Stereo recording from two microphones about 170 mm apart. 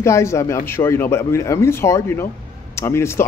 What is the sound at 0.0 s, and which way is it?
Speech, 15° left (ahead or behind).